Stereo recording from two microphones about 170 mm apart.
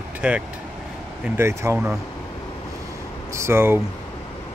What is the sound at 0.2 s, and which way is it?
Speech, 10° right (ahead or behind).